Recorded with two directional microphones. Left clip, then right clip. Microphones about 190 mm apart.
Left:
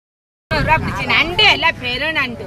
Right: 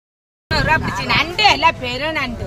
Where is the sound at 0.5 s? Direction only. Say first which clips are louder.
Left 1 dB; 60° right (ahead or behind).